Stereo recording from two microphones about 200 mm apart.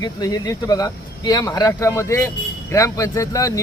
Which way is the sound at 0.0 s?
20° left (ahead or behind).